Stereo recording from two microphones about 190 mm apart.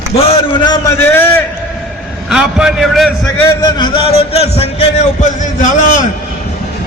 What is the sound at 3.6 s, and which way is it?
A man's voice, 20° left (ahead or behind).